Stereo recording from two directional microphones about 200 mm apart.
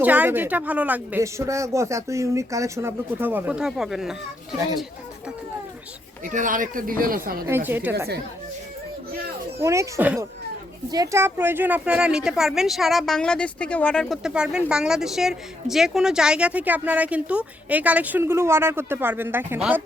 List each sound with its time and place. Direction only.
0.0 s speech: 10° right (ahead or behind)
6.2 s speech: 40° right (ahead or behind)
7.4 s speech: 10° right (ahead or behind)
9.6 s a woman's voice: 15° right (ahead or behind)